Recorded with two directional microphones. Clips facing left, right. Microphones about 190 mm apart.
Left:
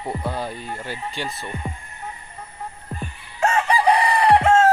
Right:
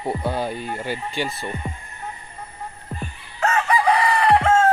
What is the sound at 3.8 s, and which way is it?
Chicken, 15° left (ahead or behind).